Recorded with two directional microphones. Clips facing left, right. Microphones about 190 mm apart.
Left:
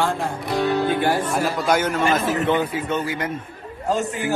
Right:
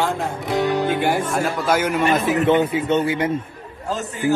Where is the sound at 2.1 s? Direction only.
25° right (ahead or behind).